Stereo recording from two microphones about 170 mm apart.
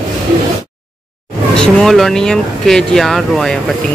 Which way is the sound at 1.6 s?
5° left (ahead or behind).